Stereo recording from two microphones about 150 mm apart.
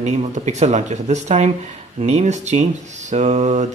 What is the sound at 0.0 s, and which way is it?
Speech, 50° right (ahead or behind).